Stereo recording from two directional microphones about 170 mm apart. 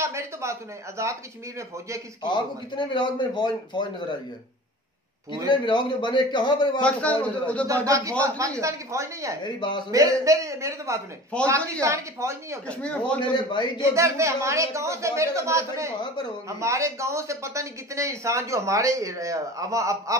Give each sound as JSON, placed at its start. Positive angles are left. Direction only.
{"t": 0.0, "sound": "speech", "side_deg": -15}
{"t": 2.2, "sound": "a man's voice", "side_deg": 25}
{"t": 5.5, "sound": "a man's voice", "side_deg": 25}
{"t": 6.8, "sound": "a man's voice", "side_deg": 5}
{"t": 8.4, "sound": "speech", "side_deg": -20}
{"t": 9.4, "sound": "a man's voice", "side_deg": 25}
{"t": 9.8, "sound": "a man's voice", "side_deg": -20}
{"t": 11.3, "sound": "a man's voice", "side_deg": 5}
{"t": 11.8, "sound": "speech", "side_deg": -15}
{"t": 12.6, "sound": "a man's voice", "side_deg": 5}
{"t": 13.2, "sound": "a man's voice", "side_deg": 25}
{"t": 13.7, "sound": "speech", "side_deg": -15}